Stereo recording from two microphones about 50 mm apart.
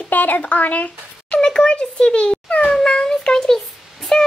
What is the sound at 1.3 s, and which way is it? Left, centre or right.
A child's voice, centre.